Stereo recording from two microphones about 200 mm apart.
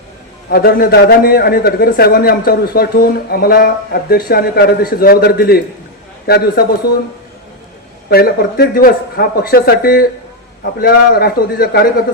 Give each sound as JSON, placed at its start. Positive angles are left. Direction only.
{"t": 0.5, "sound": "a man's voice", "side_deg": 50}
{"t": 8.1, "sound": "a man's voice", "side_deg": 50}